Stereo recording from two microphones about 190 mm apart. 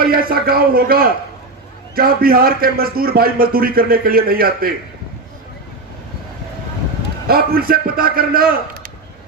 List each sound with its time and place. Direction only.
0.0 s a man's voice: 50° right (ahead or behind)
7.3 s a man's voice: 50° right (ahead or behind)